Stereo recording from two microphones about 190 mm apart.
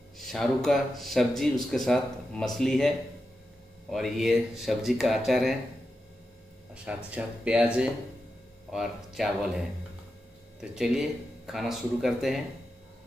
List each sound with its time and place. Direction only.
0.2 s speech: centre (ahead or behind)
3.9 s speech: centre (ahead or behind)
6.7 s a sound: 5° right (ahead or behind)
7.1 s speech: 5° right (ahead or behind)
10.6 s speech: 5° right (ahead or behind)